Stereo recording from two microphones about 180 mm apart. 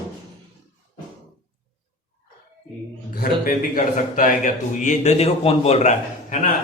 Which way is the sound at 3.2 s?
50° left (ahead or behind).